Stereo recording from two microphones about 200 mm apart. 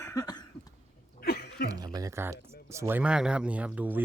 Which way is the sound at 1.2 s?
50° left (ahead or behind).